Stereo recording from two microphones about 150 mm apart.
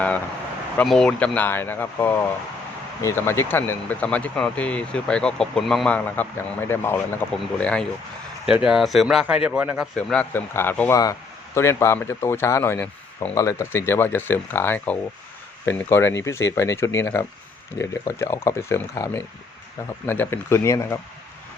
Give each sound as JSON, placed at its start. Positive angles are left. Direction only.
{"t": 0.8, "sound": "speech", "side_deg": 5}
{"t": 8.4, "sound": "speech", "side_deg": -5}
{"t": 10.0, "sound": "speech", "side_deg": 10}